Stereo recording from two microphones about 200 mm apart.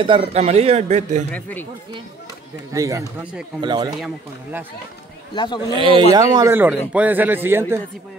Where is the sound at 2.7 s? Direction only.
15° right (ahead or behind).